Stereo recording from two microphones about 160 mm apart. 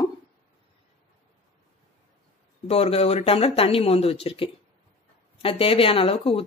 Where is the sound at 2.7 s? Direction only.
40° left (ahead or behind).